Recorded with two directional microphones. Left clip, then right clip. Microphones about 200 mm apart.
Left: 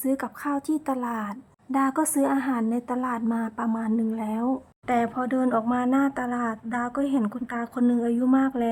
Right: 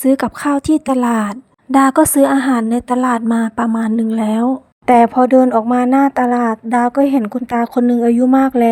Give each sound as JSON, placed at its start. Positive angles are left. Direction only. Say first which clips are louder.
{"t": 0.0, "sound": "a woman's voice", "louder": "right 13 dB", "side_deg": -35}